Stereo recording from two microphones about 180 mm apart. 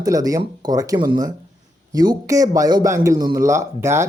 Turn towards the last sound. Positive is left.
turn(degrees=-15)  # may be behind; listen again after turning